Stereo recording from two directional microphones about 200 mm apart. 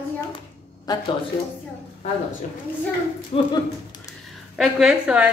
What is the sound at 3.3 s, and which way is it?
Speech, 30° left (ahead or behind).